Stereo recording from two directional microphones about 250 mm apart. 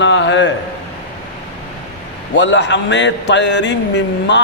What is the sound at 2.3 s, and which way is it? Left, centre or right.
A man's voice, left.